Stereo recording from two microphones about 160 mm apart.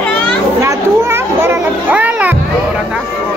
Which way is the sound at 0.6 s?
20° right (ahead or behind).